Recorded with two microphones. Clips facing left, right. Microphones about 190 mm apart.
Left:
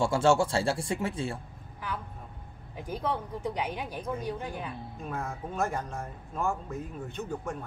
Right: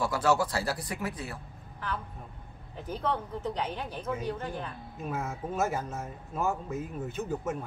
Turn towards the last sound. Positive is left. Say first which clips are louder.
# right 3 dB
turn(degrees=-5)  # may be behind; listen again after turning